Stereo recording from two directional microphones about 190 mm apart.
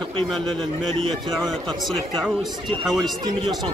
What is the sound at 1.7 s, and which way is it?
Speech, centre (ahead or behind).